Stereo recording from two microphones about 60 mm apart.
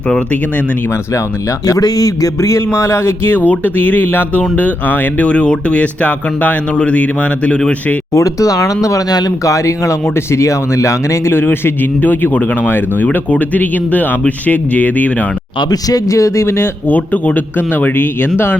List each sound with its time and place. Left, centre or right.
1.6 s speech: left
3.4 s speech: left
8.1 s speech: left
11.3 s speech: left
15.7 s speech: left
16.9 s speech: left